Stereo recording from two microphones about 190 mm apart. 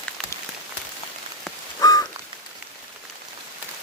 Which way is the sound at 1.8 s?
20° left (ahead or behind).